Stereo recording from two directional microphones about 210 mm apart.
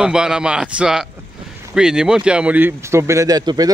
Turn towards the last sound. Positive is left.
turn(degrees=-20)  # may be behind; listen again after turning